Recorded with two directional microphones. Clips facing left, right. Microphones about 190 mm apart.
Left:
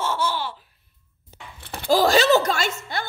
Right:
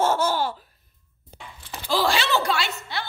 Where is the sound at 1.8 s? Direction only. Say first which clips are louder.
Left 6 dB; 45° left (ahead or behind).